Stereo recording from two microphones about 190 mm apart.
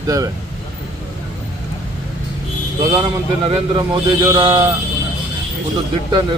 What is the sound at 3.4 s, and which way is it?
A man's voice, 25° right (ahead or behind).